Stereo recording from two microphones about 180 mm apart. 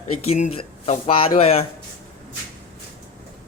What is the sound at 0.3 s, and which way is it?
Speech, 40° left (ahead or behind).